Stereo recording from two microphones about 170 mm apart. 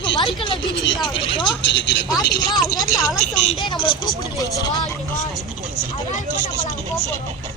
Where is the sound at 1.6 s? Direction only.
90° left.